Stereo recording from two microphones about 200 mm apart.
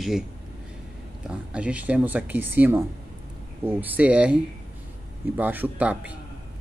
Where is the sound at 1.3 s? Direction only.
5° right (ahead or behind).